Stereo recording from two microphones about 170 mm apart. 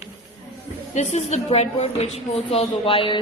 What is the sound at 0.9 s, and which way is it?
A woman's voice, 40° left (ahead or behind).